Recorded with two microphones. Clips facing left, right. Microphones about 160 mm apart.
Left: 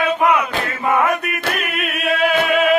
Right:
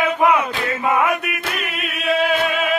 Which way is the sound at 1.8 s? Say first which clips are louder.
Right 1 dB; 60° left (ahead or behind).